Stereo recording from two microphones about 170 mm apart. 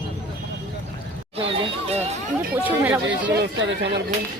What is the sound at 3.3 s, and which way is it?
Speech, 80° right.